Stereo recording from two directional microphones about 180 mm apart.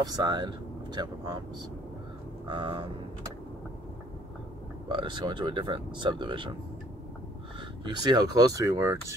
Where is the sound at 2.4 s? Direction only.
25° right (ahead or behind).